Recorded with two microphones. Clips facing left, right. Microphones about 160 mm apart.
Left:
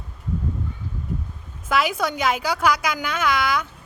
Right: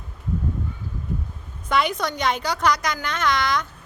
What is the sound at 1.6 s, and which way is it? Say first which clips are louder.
A woman's voice: left 1 dB; 5° left (ahead or behind).